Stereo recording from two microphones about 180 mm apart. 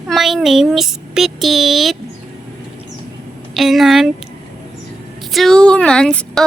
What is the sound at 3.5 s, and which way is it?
Speech, centre (ahead or behind).